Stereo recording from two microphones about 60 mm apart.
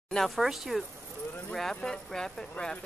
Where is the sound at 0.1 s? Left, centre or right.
Centre.